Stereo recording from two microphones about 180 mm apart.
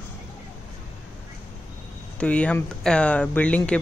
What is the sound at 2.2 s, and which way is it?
Speech, 5° left (ahead or behind).